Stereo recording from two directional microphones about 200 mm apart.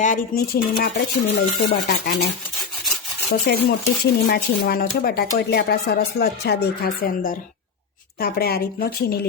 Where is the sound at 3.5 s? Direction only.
55° left (ahead or behind).